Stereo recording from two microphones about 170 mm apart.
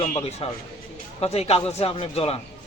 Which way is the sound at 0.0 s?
40° left (ahead or behind).